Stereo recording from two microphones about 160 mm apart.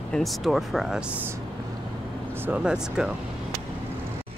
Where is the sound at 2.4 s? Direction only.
10° right (ahead or behind).